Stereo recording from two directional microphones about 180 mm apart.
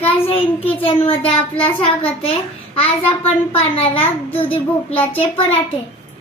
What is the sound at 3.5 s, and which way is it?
Speech, 30° left (ahead or behind).